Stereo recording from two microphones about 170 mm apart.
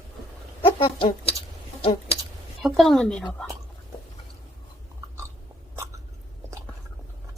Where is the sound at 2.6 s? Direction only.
Centre (ahead or behind).